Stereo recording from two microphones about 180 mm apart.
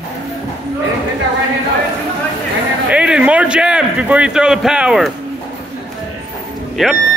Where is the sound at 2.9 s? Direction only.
5° right (ahead or behind).